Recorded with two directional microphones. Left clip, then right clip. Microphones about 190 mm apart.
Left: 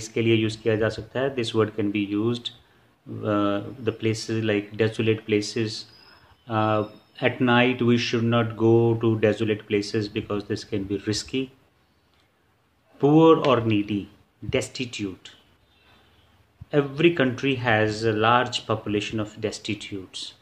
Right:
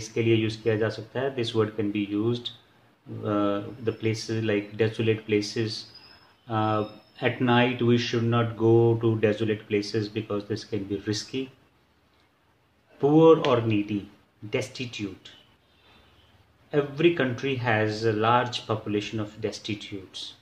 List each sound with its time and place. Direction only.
0.0 s speech: 35° left (ahead or behind)
13.0 s speech: 35° left (ahead or behind)
16.7 s speech: 35° left (ahead or behind)